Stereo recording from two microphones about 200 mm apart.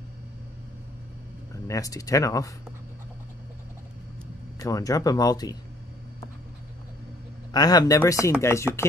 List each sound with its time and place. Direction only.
1.7 s speech: 15° left (ahead or behind)
4.6 s speech: 15° left (ahead or behind)
7.5 s speech: 20° left (ahead or behind)